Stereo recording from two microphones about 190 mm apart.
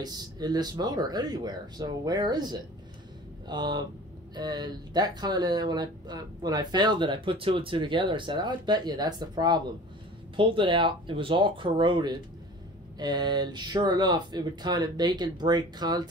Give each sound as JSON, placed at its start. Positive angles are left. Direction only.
{"t": 0.0, "sound": "speech", "side_deg": -20}